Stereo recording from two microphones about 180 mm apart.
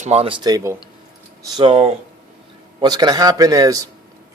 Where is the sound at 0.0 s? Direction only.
35° right (ahead or behind); by 0.8 s 20° right (ahead or behind).